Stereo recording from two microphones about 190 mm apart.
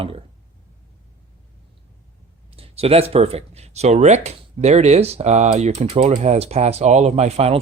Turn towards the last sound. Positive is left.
turn(degrees=-35)  # may be behind; listen again after turning